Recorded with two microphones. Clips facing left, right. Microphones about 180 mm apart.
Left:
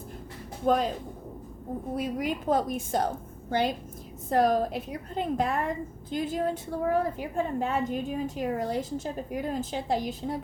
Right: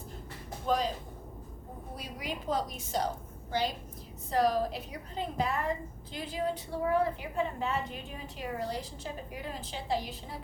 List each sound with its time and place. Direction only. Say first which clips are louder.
0.6 s speech: left 6 dB; 55° left (ahead or behind)
2.0 s a woman's voice: left 9 dB; 50° left (ahead or behind)